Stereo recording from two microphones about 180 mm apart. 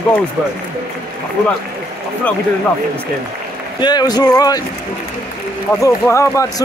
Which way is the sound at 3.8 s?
20° left (ahead or behind).